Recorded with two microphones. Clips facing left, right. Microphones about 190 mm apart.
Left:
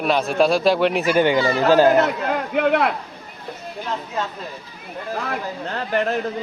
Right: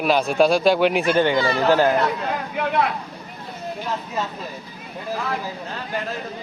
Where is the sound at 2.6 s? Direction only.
65° left (ahead or behind).